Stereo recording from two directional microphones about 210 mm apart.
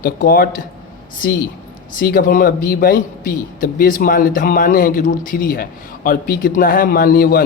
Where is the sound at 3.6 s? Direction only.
40° left (ahead or behind).